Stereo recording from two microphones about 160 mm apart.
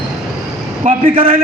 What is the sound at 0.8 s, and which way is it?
Speech, 40° right (ahead or behind).